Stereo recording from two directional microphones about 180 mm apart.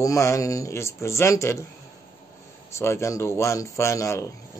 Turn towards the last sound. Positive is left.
turn(degrees=15)  # may be behind; listen again after turning